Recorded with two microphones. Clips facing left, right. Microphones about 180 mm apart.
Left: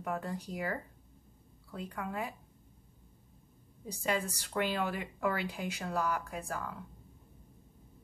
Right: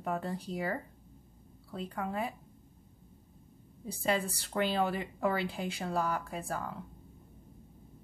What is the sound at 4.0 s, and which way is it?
Speech, 35° right (ahead or behind).